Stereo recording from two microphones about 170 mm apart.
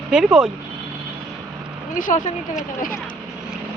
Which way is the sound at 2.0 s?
50° left (ahead or behind).